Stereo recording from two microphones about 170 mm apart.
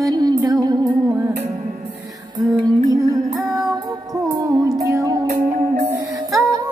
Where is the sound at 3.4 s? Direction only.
20° right (ahead or behind).